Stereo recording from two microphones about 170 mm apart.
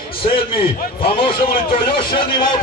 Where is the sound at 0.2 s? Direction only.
30° left (ahead or behind).